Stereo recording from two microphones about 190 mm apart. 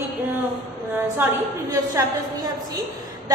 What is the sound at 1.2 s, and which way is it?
A woman's voice, 10° right (ahead or behind).